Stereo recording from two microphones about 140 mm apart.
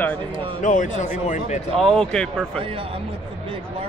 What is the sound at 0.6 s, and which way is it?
Speech, 65° left (ahead or behind).